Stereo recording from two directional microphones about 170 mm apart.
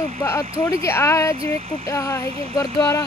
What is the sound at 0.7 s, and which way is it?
Speech, 15° left (ahead or behind).